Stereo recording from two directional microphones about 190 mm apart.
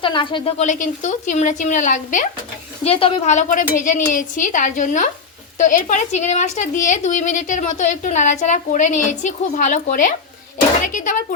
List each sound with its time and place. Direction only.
0.0 s speech: 25° left (ahead or behind)
0.6 s speech: 40° left (ahead or behind)